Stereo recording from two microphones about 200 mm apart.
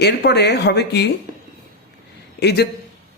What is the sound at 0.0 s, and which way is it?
Speech, 55° left (ahead or behind).